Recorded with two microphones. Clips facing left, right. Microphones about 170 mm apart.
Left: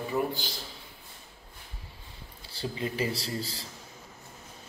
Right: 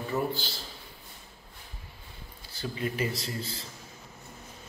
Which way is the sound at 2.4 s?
30° left (ahead or behind).